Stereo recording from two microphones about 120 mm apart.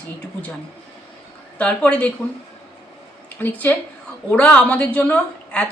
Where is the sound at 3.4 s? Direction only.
15° left (ahead or behind).